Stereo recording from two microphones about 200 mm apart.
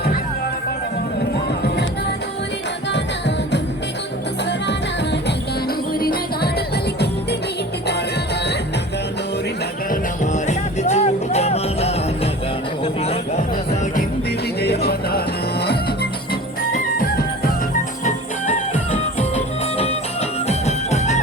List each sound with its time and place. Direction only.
2.9 s music: 60° left (ahead or behind)
5.9 s music: 50° left (ahead or behind)
9.9 s music: 35° left (ahead or behind)
14.6 s music: 50° left (ahead or behind)
17.0 s music: 50° left (ahead or behind)